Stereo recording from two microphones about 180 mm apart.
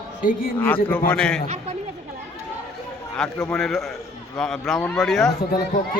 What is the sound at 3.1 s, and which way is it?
A man's voice, 5° left (ahead or behind).